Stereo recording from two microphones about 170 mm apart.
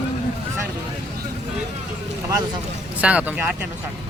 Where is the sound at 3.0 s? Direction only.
10° right (ahead or behind).